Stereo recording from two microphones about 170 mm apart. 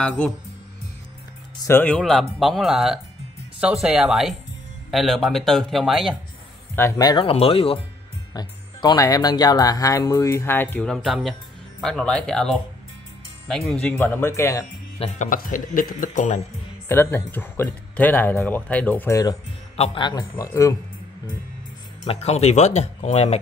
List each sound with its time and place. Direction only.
1.6 s speech: 15° left (ahead or behind)
6.7 s speech: 20° left (ahead or behind); by 7.8 s 35° left (ahead or behind)
8.3 s speech: 25° left (ahead or behind)
15.0 s speech: 50° left (ahead or behind)
16.8 s speech: 15° left (ahead or behind)
19.8 s speech: 30° left (ahead or behind)
22.0 s speech: 35° left (ahead or behind)